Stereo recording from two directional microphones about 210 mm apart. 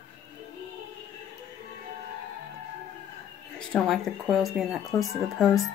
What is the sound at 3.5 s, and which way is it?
Speech, 5° left (ahead or behind).